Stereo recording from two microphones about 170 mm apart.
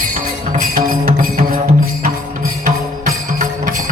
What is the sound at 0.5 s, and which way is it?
Music, 55° right (ahead or behind).